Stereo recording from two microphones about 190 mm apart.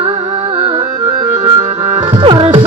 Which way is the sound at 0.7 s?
15° right (ahead or behind).